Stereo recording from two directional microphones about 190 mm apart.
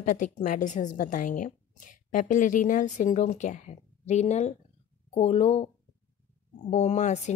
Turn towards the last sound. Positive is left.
turn(degrees=40)  # may be behind; listen again after turning